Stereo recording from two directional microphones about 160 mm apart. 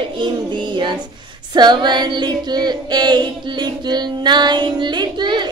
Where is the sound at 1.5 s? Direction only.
25° right (ahead or behind).